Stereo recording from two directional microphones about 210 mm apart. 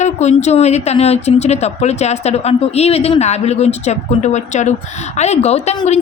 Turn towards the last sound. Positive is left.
turn(degrees=30)  # may be behind; listen again after turning